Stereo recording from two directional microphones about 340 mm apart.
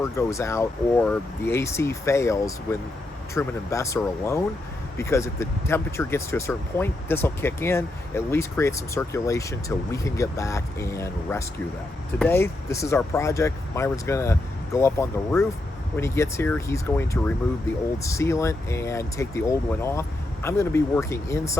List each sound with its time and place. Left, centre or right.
0.0 s speech: centre